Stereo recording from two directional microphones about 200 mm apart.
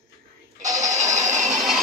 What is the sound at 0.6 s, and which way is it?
Music, 35° right (ahead or behind).